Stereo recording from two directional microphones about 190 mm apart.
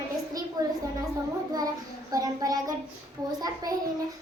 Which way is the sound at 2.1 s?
20° right (ahead or behind).